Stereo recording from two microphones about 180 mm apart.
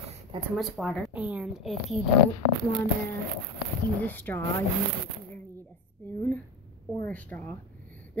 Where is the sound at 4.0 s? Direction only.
10° left (ahead or behind).